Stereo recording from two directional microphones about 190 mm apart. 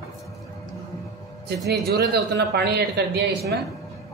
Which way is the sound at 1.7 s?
60° right (ahead or behind).